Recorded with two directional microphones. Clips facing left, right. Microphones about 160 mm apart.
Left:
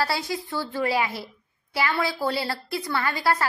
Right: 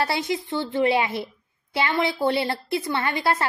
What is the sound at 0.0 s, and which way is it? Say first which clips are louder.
A woman's voice: right 2 dB; 20° right (ahead or behind).